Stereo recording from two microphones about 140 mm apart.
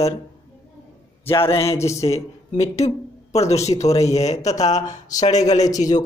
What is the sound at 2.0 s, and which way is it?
Speech, 50° left (ahead or behind).